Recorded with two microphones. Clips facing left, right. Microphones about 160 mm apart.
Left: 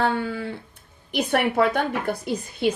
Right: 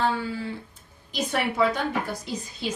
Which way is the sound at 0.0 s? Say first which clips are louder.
Left 2 dB; 60° left (ahead or behind).